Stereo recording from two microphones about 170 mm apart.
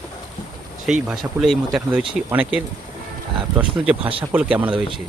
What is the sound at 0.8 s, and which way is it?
Speech, 5° right (ahead or behind).